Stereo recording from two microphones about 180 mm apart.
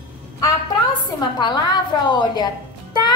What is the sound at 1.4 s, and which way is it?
A woman's voice, 25° left (ahead or behind).